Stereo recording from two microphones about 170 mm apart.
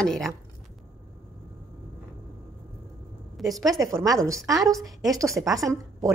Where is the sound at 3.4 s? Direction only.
Centre (ahead or behind).